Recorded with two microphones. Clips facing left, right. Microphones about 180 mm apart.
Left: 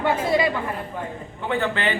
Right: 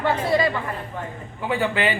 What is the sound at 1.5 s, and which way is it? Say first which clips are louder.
Speech: right 1 dB; 10° right (ahead or behind).